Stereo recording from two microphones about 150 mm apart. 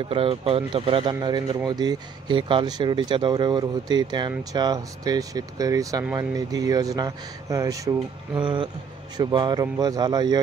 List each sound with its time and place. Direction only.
0.1 s speech: 40° right (ahead or behind); by 7.9 s 20° right (ahead or behind)
8.4 s speech: 30° right (ahead or behind)